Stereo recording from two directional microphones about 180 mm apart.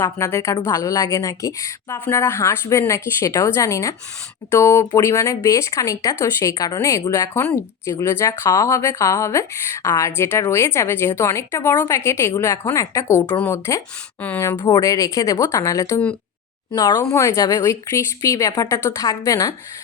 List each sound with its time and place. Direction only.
0.0 s a woman's voice: 15° left (ahead or behind)